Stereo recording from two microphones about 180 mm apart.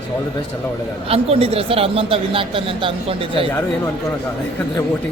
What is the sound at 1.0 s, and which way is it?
A man's voice, 35° right (ahead or behind).